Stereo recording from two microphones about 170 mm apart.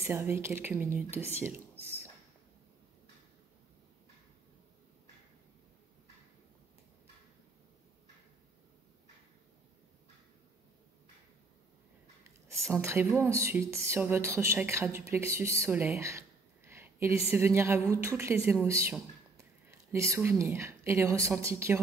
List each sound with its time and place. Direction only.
0.0 s a woman's voice: 15° right (ahead or behind)
12.7 s a woman's voice: 15° right (ahead or behind)
16.6 s a sound: 15° right (ahead or behind)
17.3 s a woman's voice: 15° right (ahead or behind)